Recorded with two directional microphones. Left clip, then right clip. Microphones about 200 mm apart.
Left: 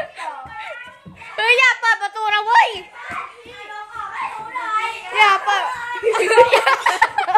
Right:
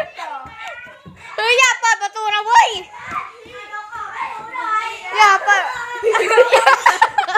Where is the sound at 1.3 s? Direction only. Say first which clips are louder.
Even; 5° right (ahead or behind).